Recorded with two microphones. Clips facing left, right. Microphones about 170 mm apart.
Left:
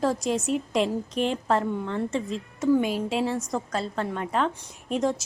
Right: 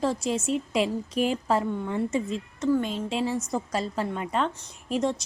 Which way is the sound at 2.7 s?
10° left (ahead or behind).